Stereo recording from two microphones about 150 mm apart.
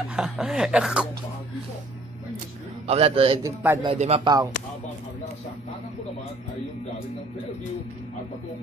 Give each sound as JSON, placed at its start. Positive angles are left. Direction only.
{"t": 0.1, "sound": "speech", "side_deg": -5}
{"t": 2.9, "sound": "speech", "side_deg": -40}
{"t": 3.4, "sound": "speech", "side_deg": -20}
{"t": 3.8, "sound": "speech", "side_deg": -40}